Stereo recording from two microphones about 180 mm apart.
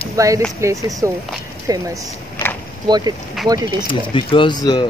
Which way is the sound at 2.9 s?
20° right (ahead or behind).